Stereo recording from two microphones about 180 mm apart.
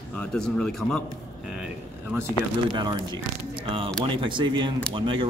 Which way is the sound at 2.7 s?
25° right (ahead or behind).